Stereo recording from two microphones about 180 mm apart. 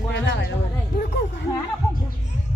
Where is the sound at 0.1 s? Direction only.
75° left (ahead or behind).